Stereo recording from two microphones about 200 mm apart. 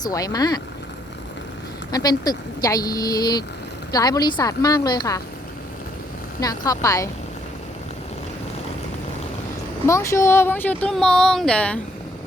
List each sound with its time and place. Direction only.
0.0 s speech: 20° left (ahead or behind)
1.9 s speech: 20° left (ahead or behind)
6.4 s speech: 20° left (ahead or behind)
9.8 s speech: 15° left (ahead or behind)